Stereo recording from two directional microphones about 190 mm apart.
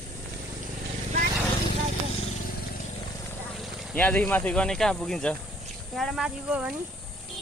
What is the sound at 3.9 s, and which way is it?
Speech, 10° left (ahead or behind).